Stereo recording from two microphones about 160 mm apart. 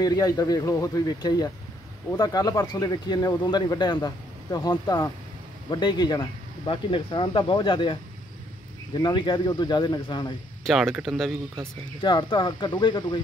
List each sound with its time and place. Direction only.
0.0 s speech: 20° left (ahead or behind)
10.6 s speech: centre (ahead or behind)
12.0 s speech: 30° left (ahead or behind)